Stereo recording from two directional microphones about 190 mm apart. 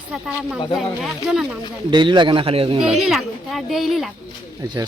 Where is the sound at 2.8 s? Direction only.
Centre (ahead or behind).